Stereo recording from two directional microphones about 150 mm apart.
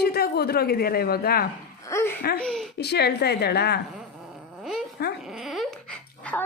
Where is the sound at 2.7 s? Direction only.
90° left.